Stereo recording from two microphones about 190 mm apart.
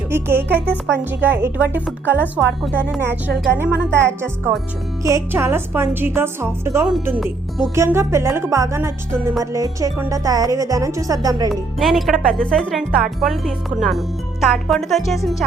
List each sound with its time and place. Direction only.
0.1 s speech: 10° right (ahead or behind)
11.8 s speech: centre (ahead or behind)